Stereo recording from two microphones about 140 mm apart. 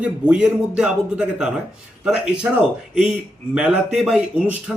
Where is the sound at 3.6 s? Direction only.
5° right (ahead or behind).